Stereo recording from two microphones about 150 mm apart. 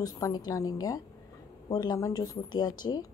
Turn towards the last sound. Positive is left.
turn(degrees=25)  # may be behind; listen again after turning